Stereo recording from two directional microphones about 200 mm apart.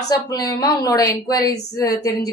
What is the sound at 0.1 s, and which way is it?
A woman's voice, 20° left (ahead or behind).